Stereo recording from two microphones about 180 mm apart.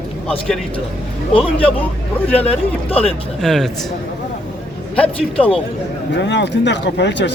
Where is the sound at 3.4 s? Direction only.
Centre (ahead or behind).